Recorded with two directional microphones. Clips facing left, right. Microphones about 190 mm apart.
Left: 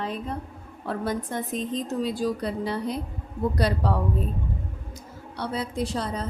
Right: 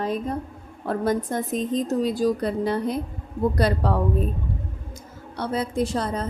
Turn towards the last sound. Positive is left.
turn(degrees=-50)  # may be behind; listen again after turning